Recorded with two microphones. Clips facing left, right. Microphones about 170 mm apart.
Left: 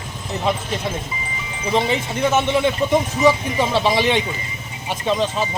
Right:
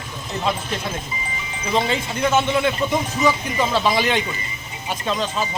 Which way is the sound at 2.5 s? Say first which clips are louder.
Left 3 dB; 25° left (ahead or behind).